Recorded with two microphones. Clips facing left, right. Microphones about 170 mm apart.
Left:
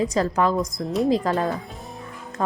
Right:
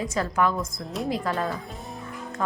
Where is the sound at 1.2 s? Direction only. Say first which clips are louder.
Left 4 dB; 35° left (ahead or behind).